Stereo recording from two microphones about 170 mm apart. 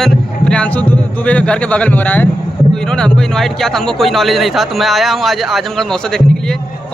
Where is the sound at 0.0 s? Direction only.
5° left (ahead or behind).